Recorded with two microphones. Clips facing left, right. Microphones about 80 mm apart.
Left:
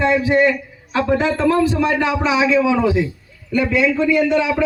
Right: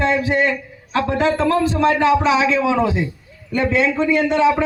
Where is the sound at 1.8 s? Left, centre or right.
Right.